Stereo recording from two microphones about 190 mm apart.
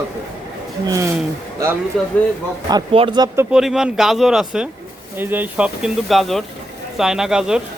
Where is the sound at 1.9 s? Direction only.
Centre (ahead or behind).